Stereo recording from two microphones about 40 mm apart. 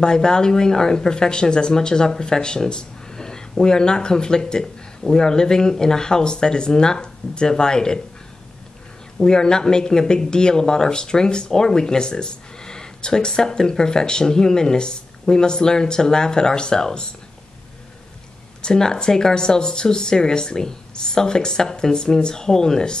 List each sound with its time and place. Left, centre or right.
0.0 s speech: centre
9.2 s speech: centre
18.6 s speech: centre